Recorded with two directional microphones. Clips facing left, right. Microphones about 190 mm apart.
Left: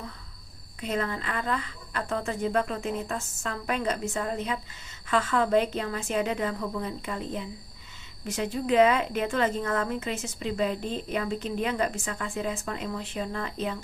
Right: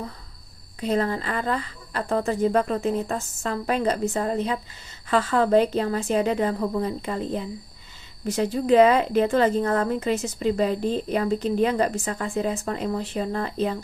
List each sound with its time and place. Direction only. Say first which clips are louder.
0.8 s a woman's voice: right 6 dB; 35° right (ahead or behind)